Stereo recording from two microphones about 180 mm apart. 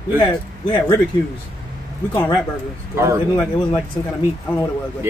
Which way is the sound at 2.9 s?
15° right (ahead or behind).